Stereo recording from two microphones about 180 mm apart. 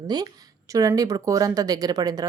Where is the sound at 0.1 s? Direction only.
20° right (ahead or behind).